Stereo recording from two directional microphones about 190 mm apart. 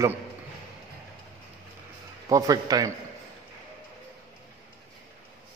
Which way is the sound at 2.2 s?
15° right (ahead or behind).